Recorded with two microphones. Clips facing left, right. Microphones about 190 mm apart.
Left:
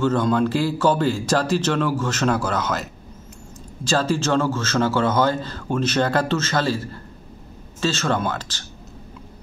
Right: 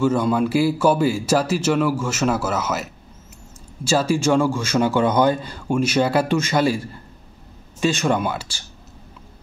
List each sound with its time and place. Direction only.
0.0 s speech: 10° right (ahead or behind)